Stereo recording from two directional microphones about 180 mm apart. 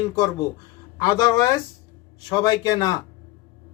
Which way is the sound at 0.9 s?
20° left (ahead or behind).